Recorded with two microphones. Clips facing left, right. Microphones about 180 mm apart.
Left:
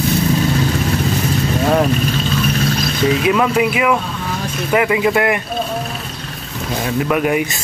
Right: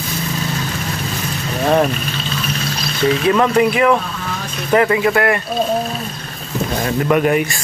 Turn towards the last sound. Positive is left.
turn(degrees=10)  # may be behind; listen again after turning